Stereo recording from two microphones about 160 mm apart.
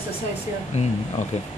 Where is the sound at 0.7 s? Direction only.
45° left (ahead or behind).